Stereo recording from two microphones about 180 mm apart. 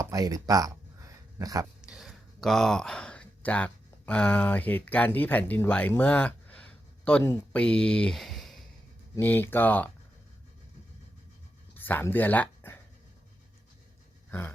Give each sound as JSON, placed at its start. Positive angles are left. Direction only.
{"t": 0.0, "sound": "a sound", "side_deg": -20}
{"t": 1.8, "sound": "speech", "side_deg": -5}
{"t": 9.1, "sound": "speech", "side_deg": 10}
{"t": 11.8, "sound": "speech", "side_deg": 10}
{"t": 14.3, "sound": "dog", "side_deg": 10}